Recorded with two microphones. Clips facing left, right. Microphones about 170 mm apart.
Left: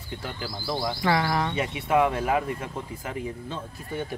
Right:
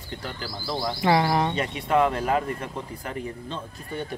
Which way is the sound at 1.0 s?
20° right (ahead or behind).